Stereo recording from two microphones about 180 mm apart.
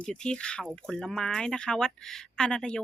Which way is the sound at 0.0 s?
5° left (ahead or behind).